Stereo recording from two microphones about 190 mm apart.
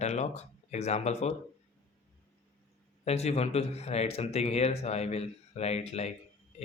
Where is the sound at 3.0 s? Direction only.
35° left (ahead or behind).